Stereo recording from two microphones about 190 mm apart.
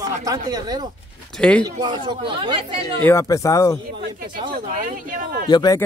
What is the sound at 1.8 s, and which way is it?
Speech, 25° right (ahead or behind).